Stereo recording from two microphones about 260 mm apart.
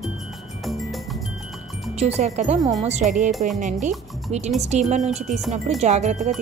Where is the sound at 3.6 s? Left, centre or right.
Right.